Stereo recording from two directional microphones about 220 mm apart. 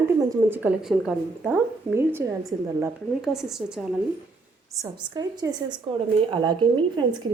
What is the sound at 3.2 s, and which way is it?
Speech, centre (ahead or behind).